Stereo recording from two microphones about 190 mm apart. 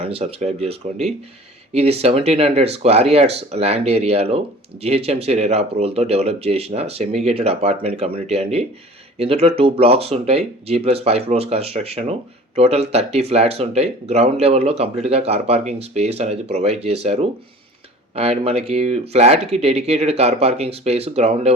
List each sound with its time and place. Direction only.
0.0 s speech: 30° right (ahead or behind)